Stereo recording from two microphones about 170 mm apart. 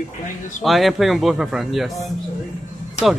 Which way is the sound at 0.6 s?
Centre (ahead or behind).